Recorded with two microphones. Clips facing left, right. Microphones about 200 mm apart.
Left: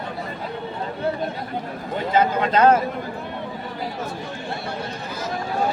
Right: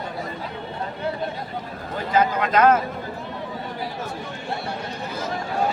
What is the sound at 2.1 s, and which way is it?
Speech, 25° left (ahead or behind).